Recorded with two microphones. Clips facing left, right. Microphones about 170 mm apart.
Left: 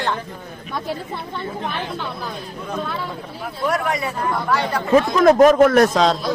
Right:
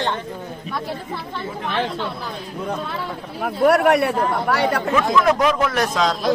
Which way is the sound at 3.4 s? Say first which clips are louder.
Right 7 dB; 60° right (ahead or behind).